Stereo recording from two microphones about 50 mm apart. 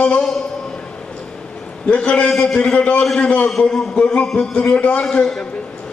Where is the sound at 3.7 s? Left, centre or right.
Centre.